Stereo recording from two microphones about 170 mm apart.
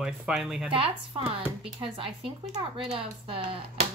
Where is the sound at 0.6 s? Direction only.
30° right (ahead or behind).